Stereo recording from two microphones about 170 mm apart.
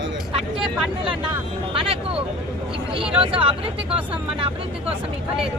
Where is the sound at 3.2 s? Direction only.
30° right (ahead or behind).